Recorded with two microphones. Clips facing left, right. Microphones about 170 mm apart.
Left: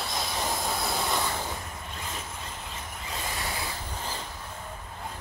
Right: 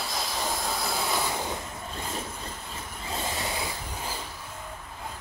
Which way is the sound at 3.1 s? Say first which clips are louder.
Right 3 dB; 20° right (ahead or behind).